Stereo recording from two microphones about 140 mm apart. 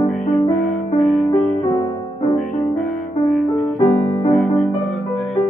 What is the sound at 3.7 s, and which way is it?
Music, 35° left (ahead or behind).